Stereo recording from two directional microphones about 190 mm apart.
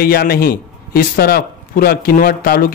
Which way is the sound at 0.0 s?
50° left (ahead or behind).